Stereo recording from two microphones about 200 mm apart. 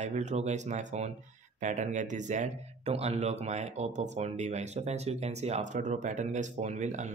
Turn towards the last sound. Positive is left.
turn(degrees=-35)  # may be behind; listen again after turning